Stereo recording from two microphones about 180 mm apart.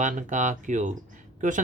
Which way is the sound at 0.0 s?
45° right (ahead or behind).